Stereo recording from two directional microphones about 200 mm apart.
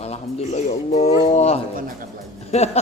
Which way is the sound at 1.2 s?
35° left (ahead or behind).